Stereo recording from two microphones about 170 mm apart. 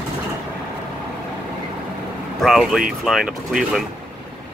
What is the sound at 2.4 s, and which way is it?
Speech, centre (ahead or behind).